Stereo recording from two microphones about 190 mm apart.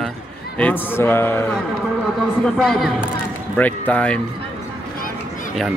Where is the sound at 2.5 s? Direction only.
Centre (ahead or behind).